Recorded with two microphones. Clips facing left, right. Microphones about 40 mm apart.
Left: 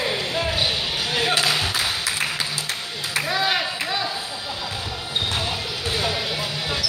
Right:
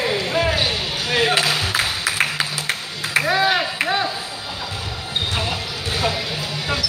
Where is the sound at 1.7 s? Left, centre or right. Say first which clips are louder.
Right 3 dB; right.